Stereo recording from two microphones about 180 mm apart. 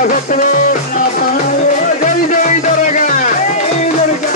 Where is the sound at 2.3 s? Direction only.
45° left (ahead or behind).